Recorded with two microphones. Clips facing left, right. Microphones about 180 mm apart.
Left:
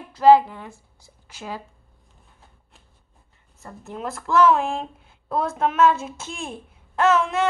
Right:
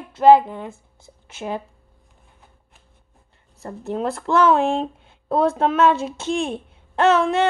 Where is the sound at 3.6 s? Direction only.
30° right (ahead or behind).